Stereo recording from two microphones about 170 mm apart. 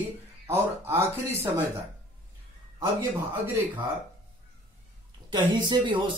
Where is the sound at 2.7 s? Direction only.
15° right (ahead or behind).